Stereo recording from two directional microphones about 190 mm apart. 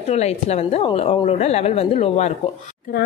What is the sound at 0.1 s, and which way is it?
A woman's voice, 35° left (ahead or behind).